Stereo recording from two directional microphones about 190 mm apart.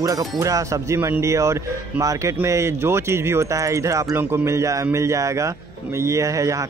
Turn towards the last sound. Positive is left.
turn(degrees=-15)  # may be behind; listen again after turning